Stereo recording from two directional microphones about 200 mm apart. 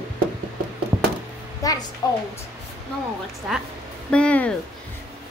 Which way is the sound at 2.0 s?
20° left (ahead or behind).